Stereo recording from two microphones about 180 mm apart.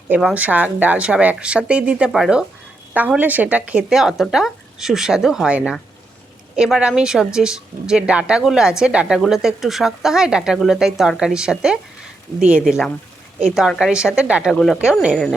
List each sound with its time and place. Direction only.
0.1 s speech: 5° right (ahead or behind)